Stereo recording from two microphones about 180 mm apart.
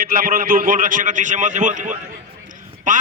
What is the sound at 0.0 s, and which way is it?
A man's voice, 50° right (ahead or behind).